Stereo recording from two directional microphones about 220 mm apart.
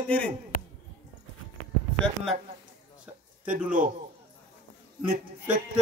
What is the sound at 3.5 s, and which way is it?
Speech, 35° right (ahead or behind).